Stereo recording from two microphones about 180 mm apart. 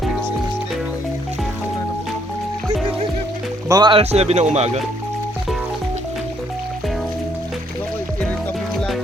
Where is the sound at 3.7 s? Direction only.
20° right (ahead or behind).